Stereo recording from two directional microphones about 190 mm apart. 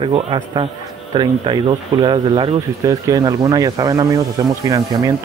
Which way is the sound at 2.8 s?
20° right (ahead or behind).